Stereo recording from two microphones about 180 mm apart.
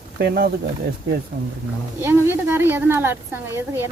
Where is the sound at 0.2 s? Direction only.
55° right (ahead or behind).